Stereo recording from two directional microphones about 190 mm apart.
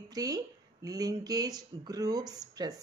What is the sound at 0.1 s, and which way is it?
Speech, 20° right (ahead or behind).